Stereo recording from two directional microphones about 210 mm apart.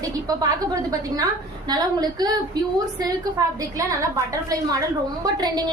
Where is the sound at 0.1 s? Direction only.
15° right (ahead or behind).